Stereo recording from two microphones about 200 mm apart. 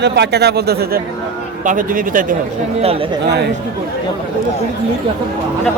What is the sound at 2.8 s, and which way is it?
Speech, 30° right (ahead or behind).